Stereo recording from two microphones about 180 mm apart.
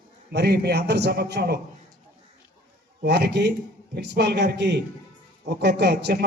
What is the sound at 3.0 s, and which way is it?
A man's voice, 65° right (ahead or behind).